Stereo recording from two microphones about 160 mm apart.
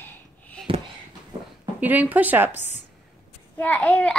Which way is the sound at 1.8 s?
10° right (ahead or behind).